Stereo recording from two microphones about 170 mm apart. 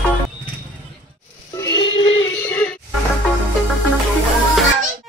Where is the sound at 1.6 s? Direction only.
25° left (ahead or behind).